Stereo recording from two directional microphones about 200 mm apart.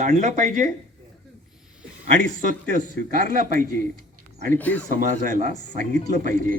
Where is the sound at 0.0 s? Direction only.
35° right (ahead or behind).